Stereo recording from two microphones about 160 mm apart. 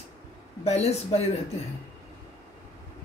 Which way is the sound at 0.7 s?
40° left (ahead or behind).